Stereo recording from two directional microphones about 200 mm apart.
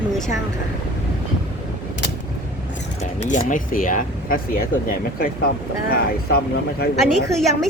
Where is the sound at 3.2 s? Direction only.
40° left (ahead or behind).